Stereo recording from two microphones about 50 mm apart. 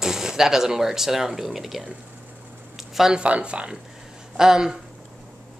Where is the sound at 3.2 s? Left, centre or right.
Right.